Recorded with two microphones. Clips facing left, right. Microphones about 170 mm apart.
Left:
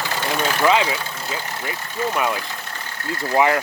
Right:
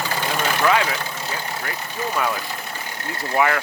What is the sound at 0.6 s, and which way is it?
Speech, 20° left (ahead or behind).